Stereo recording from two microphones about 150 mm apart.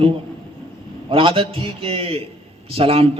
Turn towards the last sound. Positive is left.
turn(degrees=-40)  # may be behind; listen again after turning